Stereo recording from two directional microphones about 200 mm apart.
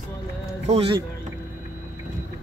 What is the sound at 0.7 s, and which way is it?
Speech, 25° right (ahead or behind).